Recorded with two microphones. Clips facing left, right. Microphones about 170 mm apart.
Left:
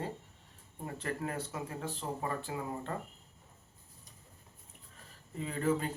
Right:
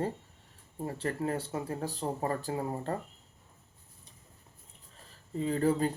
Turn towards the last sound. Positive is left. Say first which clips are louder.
# right 5 dB
turn(degrees=-35)  # may be behind; listen again after turning